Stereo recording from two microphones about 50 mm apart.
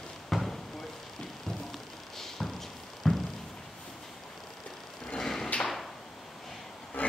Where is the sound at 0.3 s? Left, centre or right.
Centre.